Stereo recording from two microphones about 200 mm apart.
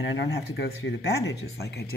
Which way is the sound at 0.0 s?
65° left (ahead or behind).